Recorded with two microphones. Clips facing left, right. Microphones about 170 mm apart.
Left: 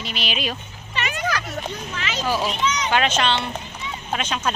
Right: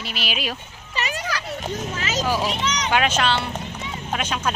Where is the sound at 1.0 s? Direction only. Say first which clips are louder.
Even; 35° right (ahead or behind).